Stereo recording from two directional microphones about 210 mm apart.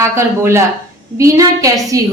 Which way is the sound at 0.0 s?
15° right (ahead or behind).